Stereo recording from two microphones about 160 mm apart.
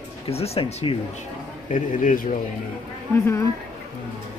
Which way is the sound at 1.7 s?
55° left (ahead or behind).